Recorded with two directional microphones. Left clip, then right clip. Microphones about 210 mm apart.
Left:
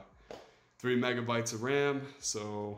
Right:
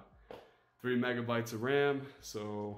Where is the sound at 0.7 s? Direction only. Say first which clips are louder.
Left 3 dB; 10° left (ahead or behind).